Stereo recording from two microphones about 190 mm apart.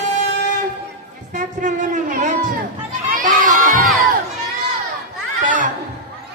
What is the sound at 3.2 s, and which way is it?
Crowd, 40° right (ahead or behind).